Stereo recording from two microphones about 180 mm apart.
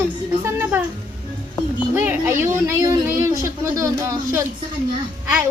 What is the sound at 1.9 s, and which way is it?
Speech, 10° right (ahead or behind).